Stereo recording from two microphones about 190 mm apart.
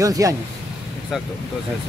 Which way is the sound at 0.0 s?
15° right (ahead or behind).